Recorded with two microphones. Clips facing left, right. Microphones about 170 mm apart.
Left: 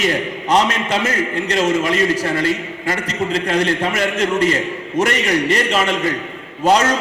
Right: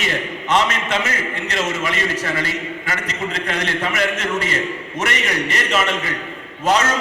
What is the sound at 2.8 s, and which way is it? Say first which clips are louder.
Speech: left 9 dB; 35° left (ahead or behind).